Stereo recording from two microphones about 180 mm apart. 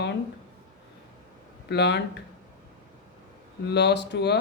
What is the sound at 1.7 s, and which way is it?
Speech, 70° left (ahead or behind).